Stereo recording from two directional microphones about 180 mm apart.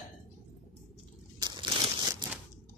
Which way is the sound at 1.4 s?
25° right (ahead or behind).